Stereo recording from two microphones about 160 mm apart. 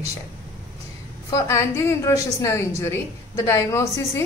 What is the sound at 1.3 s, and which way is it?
Speech, 15° left (ahead or behind).